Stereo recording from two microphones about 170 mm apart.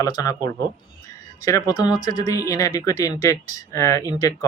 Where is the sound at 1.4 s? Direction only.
20° left (ahead or behind).